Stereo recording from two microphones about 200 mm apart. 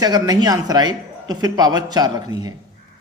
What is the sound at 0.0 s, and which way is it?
Speech, 20° right (ahead or behind).